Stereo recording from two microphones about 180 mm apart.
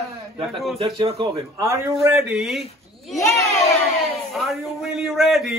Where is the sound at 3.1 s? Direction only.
15° left (ahead or behind).